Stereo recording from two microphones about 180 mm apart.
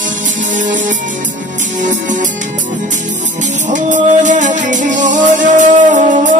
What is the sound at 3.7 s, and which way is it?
Music, 45° right (ahead or behind).